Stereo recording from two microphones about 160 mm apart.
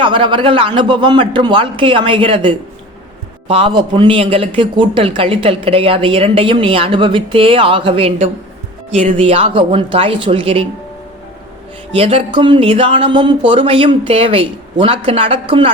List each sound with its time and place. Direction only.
0.0 s a man's voice: 30° right (ahead or behind)
11.9 s a man's voice: 35° right (ahead or behind)